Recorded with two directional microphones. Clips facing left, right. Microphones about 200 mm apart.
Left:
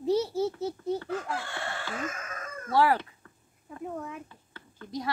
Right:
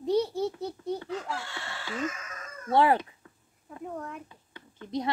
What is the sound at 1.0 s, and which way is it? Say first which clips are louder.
Chicken: left 2 dB; 50° left (ahead or behind).